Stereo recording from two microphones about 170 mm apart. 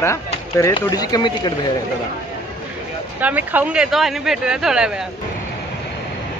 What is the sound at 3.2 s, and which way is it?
Speech, 10° right (ahead or behind).